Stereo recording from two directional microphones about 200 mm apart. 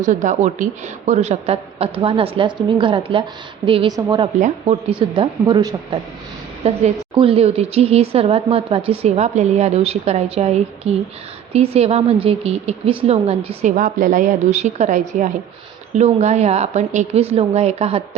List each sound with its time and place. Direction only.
0.0 s a woman's voice: 40° right (ahead or behind); by 4.3 s 20° right (ahead or behind)
4.4 s a woman's voice: 35° right (ahead or behind)